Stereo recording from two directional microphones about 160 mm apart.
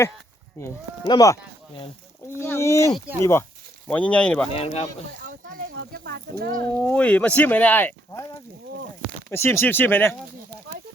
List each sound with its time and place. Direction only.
0.6 s speech: 15° left (ahead or behind)
2.4 s speech: 15° left (ahead or behind)
4.5 s speech: 40° left (ahead or behind)
5.2 s speech: 60° right (ahead or behind)
6.7 s speech: 10° left (ahead or behind)